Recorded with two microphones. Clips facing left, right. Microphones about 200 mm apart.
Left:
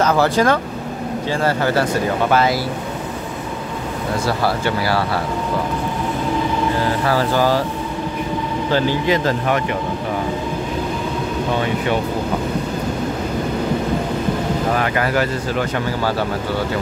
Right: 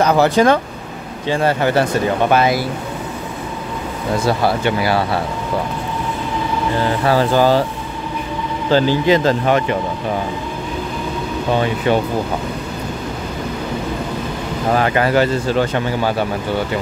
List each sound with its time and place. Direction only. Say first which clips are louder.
0.0 s speech: right 3 dB; 20° right (ahead or behind)
4.3 s speech: right 3 dB; 20° right (ahead or behind)
7.1 s speech: right 4 dB; 25° right (ahead or behind)
8.7 s speech: right 5 dB; 30° right (ahead or behind)
14.8 s speech: right 4 dB; 25° right (ahead or behind)